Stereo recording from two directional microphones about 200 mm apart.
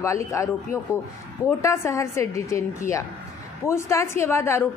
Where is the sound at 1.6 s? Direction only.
15° left (ahead or behind).